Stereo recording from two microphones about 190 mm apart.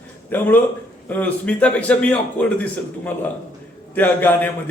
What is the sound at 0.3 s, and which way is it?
A man's voice, 10° left (ahead or behind).